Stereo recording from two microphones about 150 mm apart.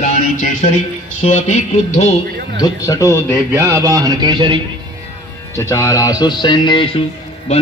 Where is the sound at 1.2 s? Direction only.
50° left (ahead or behind).